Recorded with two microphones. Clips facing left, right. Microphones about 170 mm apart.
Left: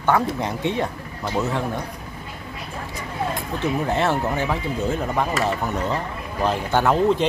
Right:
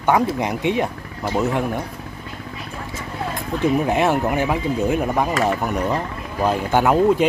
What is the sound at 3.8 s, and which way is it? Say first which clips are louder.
Speech: right 3 dB; 15° right (ahead or behind).